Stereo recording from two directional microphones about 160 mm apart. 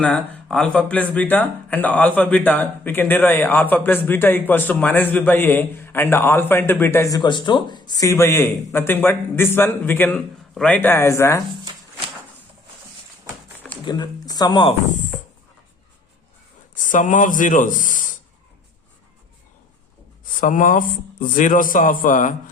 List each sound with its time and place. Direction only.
0.0 s speech: 5° left (ahead or behind)
7.2 s speech: 30° left (ahead or behind)
13.8 s speech: 25° left (ahead or behind)
16.8 s speech: 55° left (ahead or behind)
20.4 s a man's voice: 55° left (ahead or behind)